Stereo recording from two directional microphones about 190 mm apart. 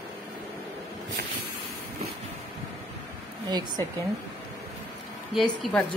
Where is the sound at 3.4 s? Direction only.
20° right (ahead or behind).